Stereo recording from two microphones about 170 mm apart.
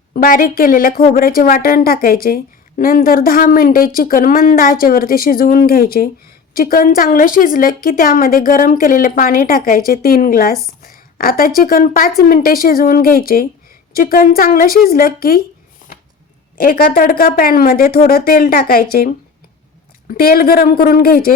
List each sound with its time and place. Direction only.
0.1 s speech: 55° left (ahead or behind)
16.6 s speech: 60° left (ahead or behind)